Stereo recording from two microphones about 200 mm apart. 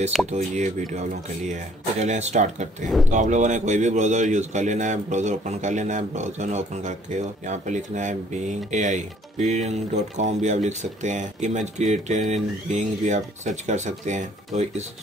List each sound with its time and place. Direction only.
0.3 s a man's voice: 35° right (ahead or behind)